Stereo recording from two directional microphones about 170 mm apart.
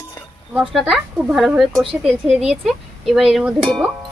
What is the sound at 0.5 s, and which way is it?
Cowbell, centre (ahead or behind).